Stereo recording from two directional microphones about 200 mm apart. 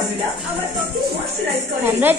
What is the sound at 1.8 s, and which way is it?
Speech, 10° right (ahead or behind).